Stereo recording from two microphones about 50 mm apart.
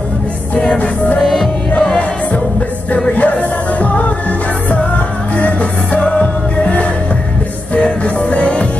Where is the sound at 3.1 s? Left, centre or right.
Left.